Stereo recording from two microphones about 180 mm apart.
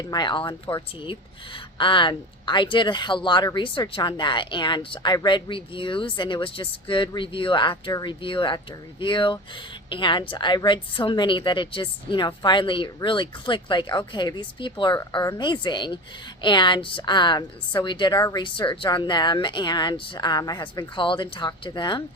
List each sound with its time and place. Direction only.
0.0 s speech: 25° left (ahead or behind)